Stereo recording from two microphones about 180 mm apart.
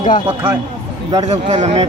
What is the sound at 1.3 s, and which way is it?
Speech, 40° right (ahead or behind).